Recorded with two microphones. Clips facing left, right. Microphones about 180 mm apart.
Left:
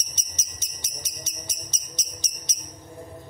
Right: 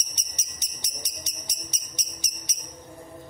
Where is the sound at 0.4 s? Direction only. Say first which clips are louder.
Left 1 dB; 15° right (ahead or behind).